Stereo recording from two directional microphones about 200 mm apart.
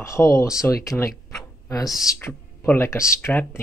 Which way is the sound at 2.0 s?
10° left (ahead or behind).